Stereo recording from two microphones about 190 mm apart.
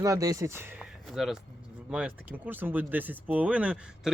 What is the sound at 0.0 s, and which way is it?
Speech, 20° right (ahead or behind).